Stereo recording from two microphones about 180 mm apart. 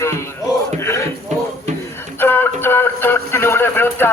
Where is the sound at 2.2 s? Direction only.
10° left (ahead or behind).